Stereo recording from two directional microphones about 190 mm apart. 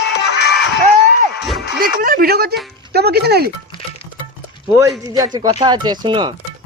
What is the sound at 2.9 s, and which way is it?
Music, 60° right (ahead or behind).